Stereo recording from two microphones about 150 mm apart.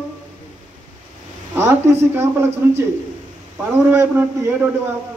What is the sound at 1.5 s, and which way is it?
Speech, 15° right (ahead or behind).